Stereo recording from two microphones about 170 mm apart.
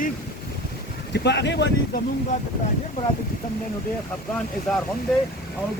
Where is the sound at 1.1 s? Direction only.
85° left.